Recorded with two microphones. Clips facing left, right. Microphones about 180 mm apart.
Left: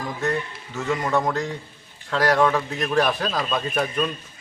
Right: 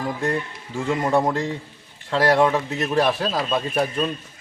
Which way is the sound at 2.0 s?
25° right (ahead or behind).